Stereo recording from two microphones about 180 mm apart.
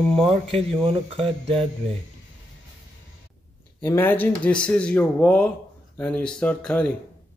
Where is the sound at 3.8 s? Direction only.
10° left (ahead or behind).